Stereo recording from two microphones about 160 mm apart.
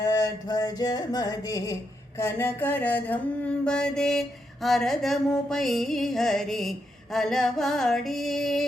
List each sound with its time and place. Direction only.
0.0 s music: 20° left (ahead or behind)
2.1 s mantra: 15° left (ahead or behind)